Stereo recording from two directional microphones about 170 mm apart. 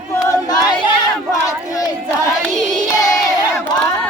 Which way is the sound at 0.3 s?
25° left (ahead or behind).